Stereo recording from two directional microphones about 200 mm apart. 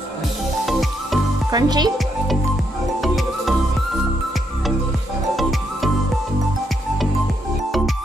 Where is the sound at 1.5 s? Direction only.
20° right (ahead or behind).